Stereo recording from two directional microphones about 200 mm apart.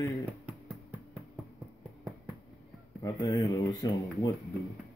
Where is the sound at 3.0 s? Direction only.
15° left (ahead or behind).